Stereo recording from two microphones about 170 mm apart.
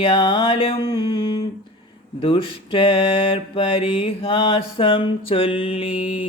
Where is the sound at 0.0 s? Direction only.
30° left (ahead or behind).